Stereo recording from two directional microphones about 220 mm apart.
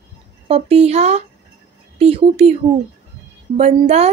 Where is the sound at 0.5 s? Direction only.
30° right (ahead or behind).